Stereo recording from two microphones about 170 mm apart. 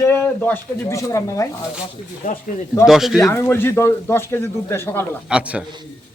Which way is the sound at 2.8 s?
Centre (ahead or behind).